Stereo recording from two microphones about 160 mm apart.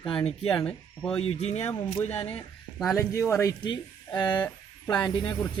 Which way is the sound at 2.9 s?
20° left (ahead or behind).